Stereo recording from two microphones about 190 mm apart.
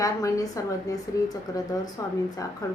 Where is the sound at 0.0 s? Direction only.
15° left (ahead or behind).